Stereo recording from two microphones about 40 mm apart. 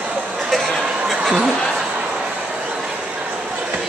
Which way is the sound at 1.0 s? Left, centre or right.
Centre.